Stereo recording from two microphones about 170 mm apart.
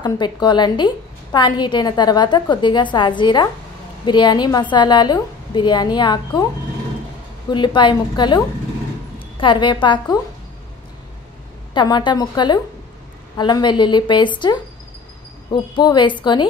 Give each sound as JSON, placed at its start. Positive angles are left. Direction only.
{"t": 0.0, "sound": "a woman's voice", "side_deg": 25}
{"t": 7.5, "sound": "a woman's voice", "side_deg": 25}
{"t": 9.4, "sound": "a woman's voice", "side_deg": 25}
{"t": 11.7, "sound": "a woman's voice", "side_deg": 25}